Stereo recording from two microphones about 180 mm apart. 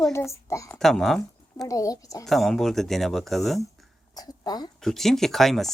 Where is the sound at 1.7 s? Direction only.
20° left (ahead or behind).